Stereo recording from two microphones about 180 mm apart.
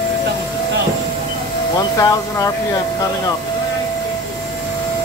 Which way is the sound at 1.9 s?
20° left (ahead or behind).